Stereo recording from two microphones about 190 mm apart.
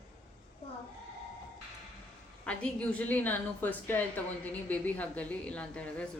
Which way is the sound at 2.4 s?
5° left (ahead or behind).